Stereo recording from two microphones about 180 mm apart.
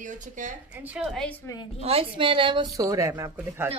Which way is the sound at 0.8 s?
5° right (ahead or behind).